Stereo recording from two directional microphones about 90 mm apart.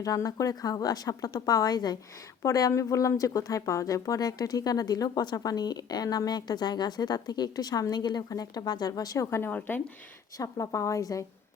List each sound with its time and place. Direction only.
0.0 s speech: 40° left (ahead or behind)
2.4 s speech: 40° left (ahead or behind)
9.5 s speech: 20° left (ahead or behind)
10.3 s a woman's voice: 40° left (ahead or behind)